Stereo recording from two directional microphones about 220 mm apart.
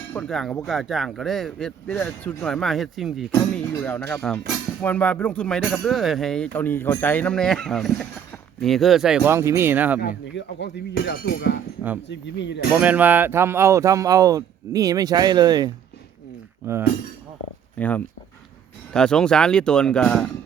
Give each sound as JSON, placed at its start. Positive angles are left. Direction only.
{"t": 0.1, "sound": "speech", "side_deg": 5}
{"t": 3.7, "sound": "speech", "side_deg": 10}
{"t": 10.0, "sound": "speech", "side_deg": 50}
{"t": 12.8, "sound": "speech", "side_deg": -10}
{"t": 17.7, "sound": "speech", "side_deg": 5}